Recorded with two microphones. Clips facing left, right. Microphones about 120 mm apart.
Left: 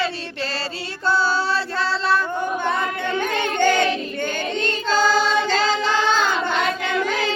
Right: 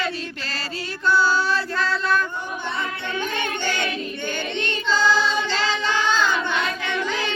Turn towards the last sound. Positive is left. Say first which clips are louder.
# left 3 dB
turn(degrees=40)  # may be behind; listen again after turning